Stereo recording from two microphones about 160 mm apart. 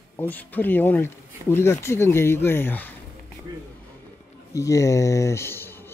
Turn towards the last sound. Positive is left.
turn(degrees=15)  # may be behind; listen again after turning